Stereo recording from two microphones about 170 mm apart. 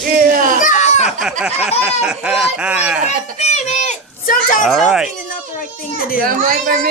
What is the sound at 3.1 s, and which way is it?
A child's voice, 40° left (ahead or behind).